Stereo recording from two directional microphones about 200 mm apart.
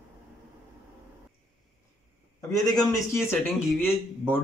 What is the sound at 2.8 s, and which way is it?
Speech, 10° left (ahead or behind).